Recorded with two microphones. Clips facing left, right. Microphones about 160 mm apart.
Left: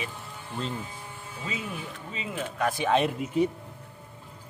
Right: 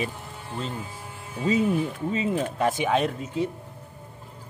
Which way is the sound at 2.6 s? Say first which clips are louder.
Left 1 dB; 25° right (ahead or behind).